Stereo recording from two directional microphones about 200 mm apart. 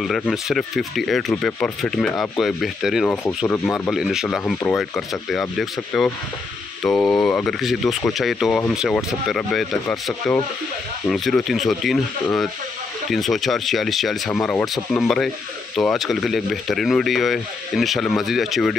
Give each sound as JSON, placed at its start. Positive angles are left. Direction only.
{"t": 0.0, "sound": "speech", "side_deg": 0}
{"t": 3.9, "sound": "speech", "side_deg": 0}
{"t": 13.1, "sound": "speech", "side_deg": 0}